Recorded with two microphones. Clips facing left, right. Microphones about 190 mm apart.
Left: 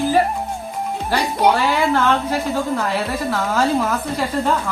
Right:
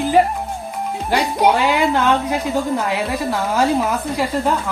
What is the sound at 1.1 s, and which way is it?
Speech, 10° right (ahead or behind).